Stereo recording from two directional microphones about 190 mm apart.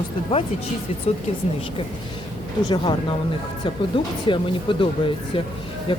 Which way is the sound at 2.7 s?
25° left (ahead or behind).